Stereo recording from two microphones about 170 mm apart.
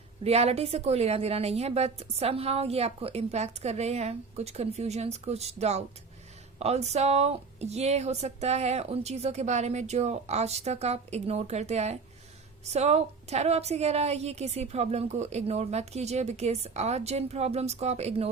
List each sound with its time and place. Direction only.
0.3 s a woman's voice: 40° right (ahead or behind)